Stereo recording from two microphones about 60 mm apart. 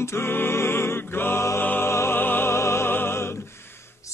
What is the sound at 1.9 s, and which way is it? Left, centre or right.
Music, left.